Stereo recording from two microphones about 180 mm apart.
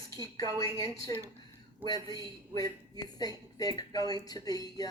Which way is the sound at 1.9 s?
20° left (ahead or behind).